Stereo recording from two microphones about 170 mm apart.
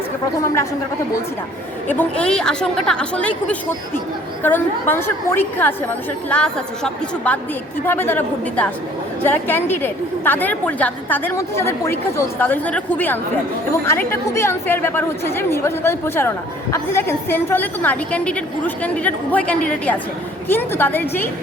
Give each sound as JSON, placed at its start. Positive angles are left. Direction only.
{"t": 0.4, "sound": "a woman's voice", "side_deg": 15}
{"t": 1.9, "sound": "a woman's voice", "side_deg": 10}